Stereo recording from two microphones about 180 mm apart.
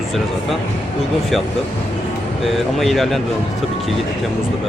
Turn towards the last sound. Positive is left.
turn(degrees=0)  # may be behind; listen again after turning